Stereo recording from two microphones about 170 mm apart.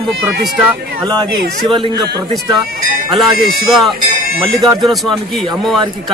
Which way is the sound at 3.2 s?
Centre (ahead or behind).